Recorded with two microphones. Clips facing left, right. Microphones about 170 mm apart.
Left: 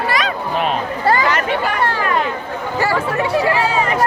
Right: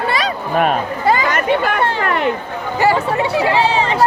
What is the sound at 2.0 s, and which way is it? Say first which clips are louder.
Speech: right 3 dB; 60° right (ahead or behind).